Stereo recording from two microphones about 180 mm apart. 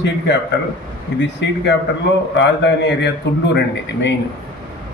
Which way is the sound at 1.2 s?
75° left (ahead or behind).